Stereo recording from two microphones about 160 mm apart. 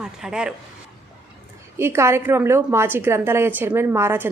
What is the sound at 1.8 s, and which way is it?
A woman's voice, 15° right (ahead or behind).